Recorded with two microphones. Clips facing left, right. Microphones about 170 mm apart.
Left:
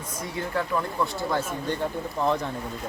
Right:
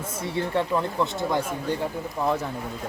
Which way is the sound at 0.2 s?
30° right (ahead or behind).